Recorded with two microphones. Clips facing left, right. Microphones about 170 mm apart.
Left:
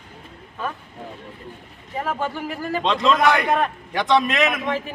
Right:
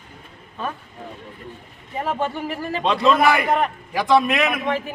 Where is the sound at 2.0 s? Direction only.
20° right (ahead or behind).